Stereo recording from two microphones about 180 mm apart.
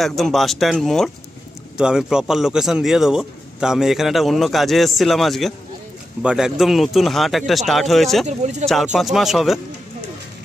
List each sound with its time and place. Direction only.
0.0 s a man's voice: centre (ahead or behind)
8.3 s speech: 40° right (ahead or behind)
8.6 s a man's voice: centre (ahead or behind)